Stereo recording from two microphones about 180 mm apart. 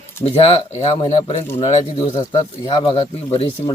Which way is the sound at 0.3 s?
35° left (ahead or behind).